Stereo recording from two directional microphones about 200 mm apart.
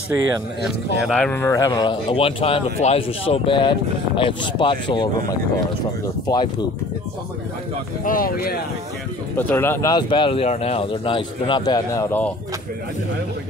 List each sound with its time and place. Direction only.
0.7 s speech: centre (ahead or behind); by 6.5 s 20° left (ahead or behind)
8.0 s speech: 45° left (ahead or behind)
9.4 s speech: 10° left (ahead or behind)